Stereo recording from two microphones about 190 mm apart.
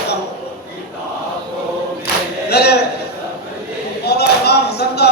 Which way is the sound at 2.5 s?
60° left (ahead or behind).